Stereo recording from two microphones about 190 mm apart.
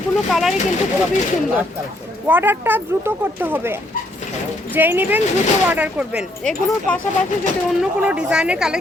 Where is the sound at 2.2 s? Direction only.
10° right (ahead or behind).